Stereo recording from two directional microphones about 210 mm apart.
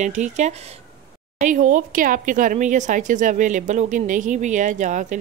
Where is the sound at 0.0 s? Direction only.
35° right (ahead or behind).